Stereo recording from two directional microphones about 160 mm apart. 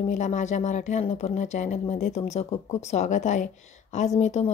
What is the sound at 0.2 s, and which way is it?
A woman's voice, 50° left (ahead or behind).